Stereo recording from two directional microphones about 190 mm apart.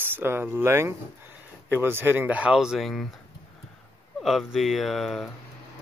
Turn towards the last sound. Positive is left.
turn(degrees=0)  # may be behind; listen again after turning